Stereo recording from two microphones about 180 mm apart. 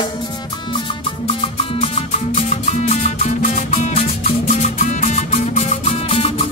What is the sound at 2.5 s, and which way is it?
Music, 40° left (ahead or behind).